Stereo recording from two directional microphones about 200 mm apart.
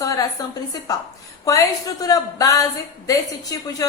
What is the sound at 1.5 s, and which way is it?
A woman's voice, 15° left (ahead or behind).